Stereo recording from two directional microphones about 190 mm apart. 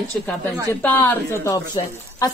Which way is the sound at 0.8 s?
10° left (ahead or behind).